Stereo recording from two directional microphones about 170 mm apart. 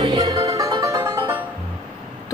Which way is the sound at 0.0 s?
25° right (ahead or behind).